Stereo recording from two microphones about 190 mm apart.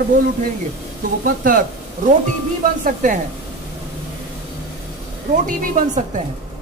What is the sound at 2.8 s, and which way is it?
Speech, 40° right (ahead or behind).